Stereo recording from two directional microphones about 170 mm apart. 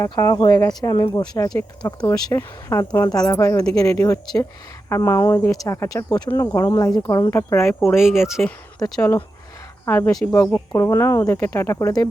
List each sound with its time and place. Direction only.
0.0 s speech: 20° left (ahead or behind)
7.9 s speech: centre (ahead or behind)
9.0 s speech: 15° left (ahead or behind)